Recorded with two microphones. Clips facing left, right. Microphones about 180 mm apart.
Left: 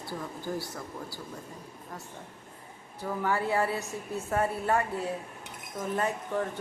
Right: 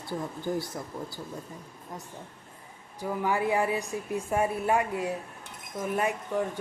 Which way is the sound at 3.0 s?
10° right (ahead or behind).